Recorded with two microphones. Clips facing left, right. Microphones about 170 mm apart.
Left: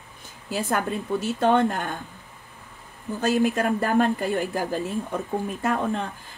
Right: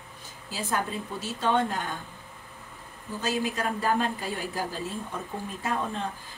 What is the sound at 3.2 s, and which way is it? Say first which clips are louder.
Speech: left 7 dB; 55° left (ahead or behind).